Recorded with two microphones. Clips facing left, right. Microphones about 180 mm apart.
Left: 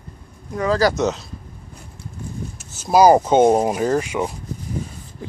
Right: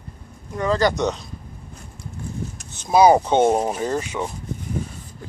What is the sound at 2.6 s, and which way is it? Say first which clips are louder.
Speech: left 1 dB; 5° left (ahead or behind).